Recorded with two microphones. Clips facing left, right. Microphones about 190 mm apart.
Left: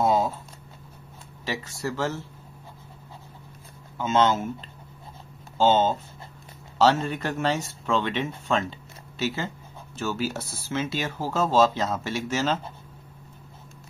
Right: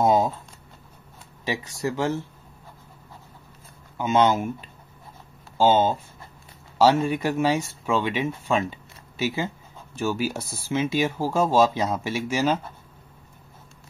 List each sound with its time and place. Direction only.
0.0 s a sound: 20° right (ahead or behind)
1.4 s speech: 15° right (ahead or behind)
4.0 s speech: 15° right (ahead or behind)